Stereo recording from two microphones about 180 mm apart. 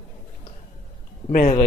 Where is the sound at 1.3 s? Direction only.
45° left (ahead or behind).